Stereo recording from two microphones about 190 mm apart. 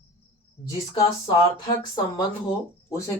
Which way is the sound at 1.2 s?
25° left (ahead or behind).